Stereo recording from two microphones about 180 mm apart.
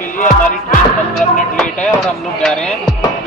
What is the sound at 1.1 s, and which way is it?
Music, 5° left (ahead or behind).